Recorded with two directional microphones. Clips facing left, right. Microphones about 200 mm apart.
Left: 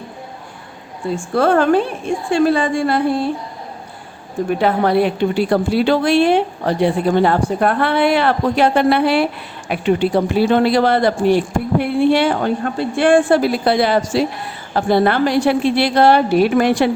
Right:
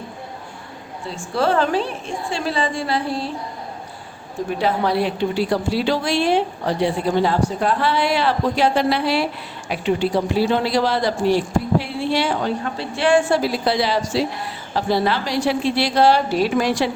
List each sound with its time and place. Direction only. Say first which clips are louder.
1.1 s a woman's voice: left 5 dB; 55° left (ahead or behind)
4.6 s a woman's voice: left 4 dB; 55° left (ahead or behind)